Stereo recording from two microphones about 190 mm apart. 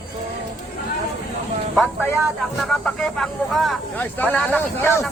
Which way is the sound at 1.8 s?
10° left (ahead or behind).